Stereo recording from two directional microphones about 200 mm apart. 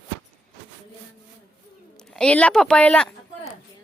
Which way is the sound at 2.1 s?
5° left (ahead or behind).